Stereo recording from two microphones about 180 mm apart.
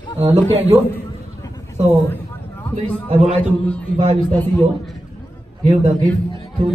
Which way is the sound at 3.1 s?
35° right (ahead or behind).